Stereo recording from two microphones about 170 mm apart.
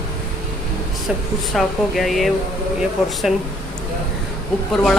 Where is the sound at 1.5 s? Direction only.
Centre (ahead or behind).